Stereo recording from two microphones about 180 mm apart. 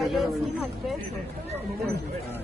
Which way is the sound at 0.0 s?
Centre (ahead or behind).